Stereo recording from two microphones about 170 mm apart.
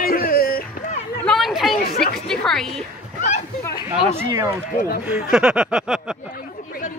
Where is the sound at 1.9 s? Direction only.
60° left (ahead or behind).